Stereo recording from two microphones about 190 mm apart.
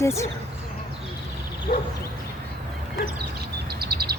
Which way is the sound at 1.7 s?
45° left (ahead or behind).